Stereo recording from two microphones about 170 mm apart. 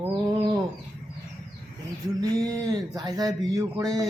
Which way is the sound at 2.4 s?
20° right (ahead or behind).